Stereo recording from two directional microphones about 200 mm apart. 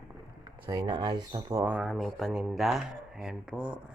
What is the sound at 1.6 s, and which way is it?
Speech, 5° right (ahead or behind).